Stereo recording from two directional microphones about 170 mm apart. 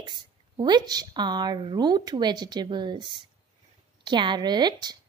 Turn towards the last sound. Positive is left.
turn(degrees=-25)  # may be behind; listen again after turning